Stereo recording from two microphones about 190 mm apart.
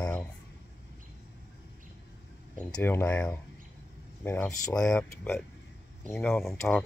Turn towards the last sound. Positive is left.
turn(degrees=10)  # may be behind; listen again after turning